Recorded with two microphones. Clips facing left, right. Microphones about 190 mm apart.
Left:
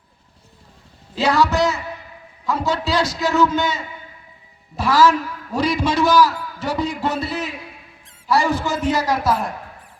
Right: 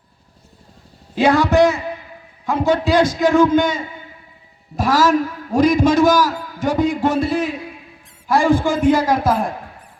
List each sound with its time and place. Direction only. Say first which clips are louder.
1.1 s a man's voice: right 4 dB; 55° right (ahead or behind)